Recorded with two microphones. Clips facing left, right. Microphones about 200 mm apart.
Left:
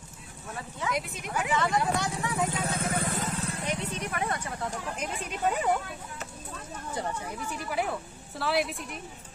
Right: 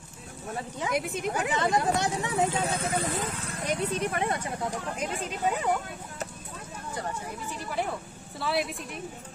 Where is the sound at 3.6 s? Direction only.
40° right (ahead or behind); by 4.5 s 20° right (ahead or behind).